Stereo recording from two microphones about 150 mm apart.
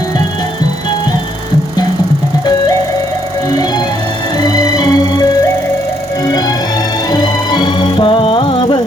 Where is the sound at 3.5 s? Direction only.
25° left (ahead or behind).